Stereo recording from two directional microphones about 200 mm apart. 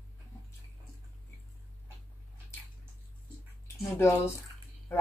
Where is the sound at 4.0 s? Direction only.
15° left (ahead or behind).